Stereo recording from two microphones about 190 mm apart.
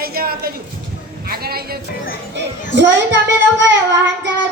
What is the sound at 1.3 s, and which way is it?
Speech, 55° right (ahead or behind).